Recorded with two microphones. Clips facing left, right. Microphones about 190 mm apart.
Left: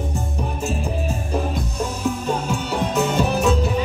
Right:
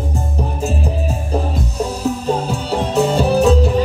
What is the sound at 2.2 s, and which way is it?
Music, 35° right (ahead or behind).